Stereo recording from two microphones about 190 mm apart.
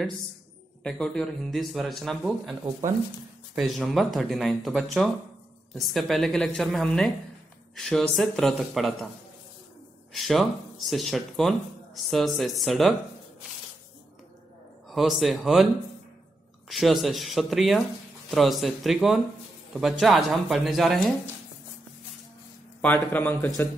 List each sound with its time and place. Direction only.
0.8 s speech: 5° left (ahead or behind)
3.5 s speech: centre (ahead or behind)
10.1 s speech: centre (ahead or behind)
14.9 s speech: centre (ahead or behind)
22.8 s speech: 10° left (ahead or behind)